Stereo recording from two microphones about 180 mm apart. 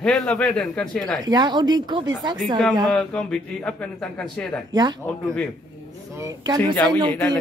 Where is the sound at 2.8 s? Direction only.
5° left (ahead or behind).